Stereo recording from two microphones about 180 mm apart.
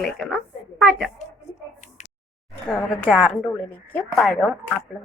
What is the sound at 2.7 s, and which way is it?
A woman's voice, 5° left (ahead or behind).